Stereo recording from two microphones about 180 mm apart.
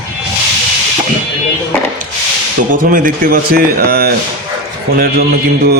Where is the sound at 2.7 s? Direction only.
50° right (ahead or behind).